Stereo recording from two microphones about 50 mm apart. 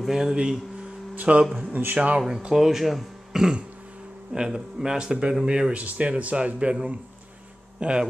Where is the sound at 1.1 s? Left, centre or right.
Right.